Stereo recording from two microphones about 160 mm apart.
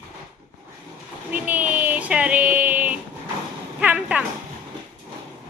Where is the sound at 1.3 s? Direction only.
10° right (ahead or behind).